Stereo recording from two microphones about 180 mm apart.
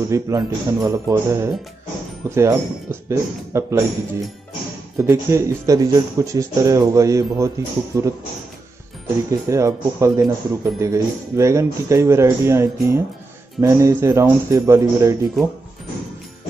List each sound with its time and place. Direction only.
0.1 s speech: 15° right (ahead or behind)
4.9 s speech: 15° right (ahead or behind)
9.5 s speech: 15° right (ahead or behind)